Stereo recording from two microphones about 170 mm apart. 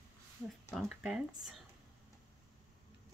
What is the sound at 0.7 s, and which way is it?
Speech, centre (ahead or behind).